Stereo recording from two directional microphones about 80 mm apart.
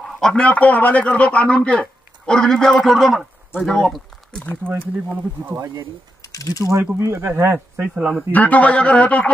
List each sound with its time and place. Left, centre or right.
0.0 s a man's voice: centre
4.6 s speech: right
6.2 s mechanisms: left
6.6 s speech: right
7.9 s speech: centre
8.3 s a man's voice: centre